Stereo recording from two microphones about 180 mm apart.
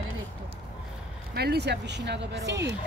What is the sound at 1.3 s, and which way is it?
Speech, 65° right (ahead or behind).